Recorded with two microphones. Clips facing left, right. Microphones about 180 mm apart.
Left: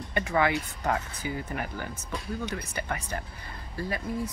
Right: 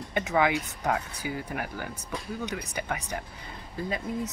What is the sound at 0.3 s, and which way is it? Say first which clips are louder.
Speech: right 1 dB; 15° right (ahead or behind).